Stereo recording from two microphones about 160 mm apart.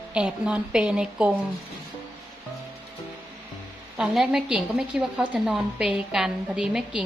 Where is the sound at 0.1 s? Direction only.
5° right (ahead or behind).